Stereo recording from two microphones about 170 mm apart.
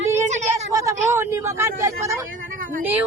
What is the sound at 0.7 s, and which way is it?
Speech, 20° right (ahead or behind).